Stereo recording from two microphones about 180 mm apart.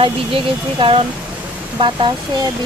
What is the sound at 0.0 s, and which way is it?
Speech, 30° right (ahead or behind).